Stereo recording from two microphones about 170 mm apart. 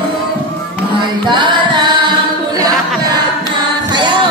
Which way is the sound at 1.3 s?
30° right (ahead or behind).